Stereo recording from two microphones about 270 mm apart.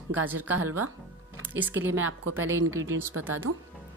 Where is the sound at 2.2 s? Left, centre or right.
Right.